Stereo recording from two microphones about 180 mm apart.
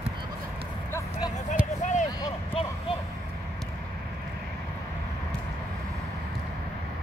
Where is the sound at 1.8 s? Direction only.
40° left (ahead or behind).